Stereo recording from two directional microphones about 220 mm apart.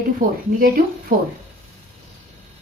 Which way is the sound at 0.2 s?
40° right (ahead or behind).